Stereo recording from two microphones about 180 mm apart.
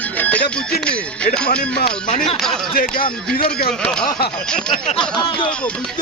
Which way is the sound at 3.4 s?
55° left (ahead or behind).